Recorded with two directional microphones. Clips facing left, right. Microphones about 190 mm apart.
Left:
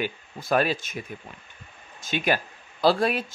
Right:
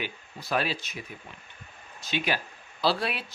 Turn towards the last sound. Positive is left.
turn(degrees=45)  # may be behind; listen again after turning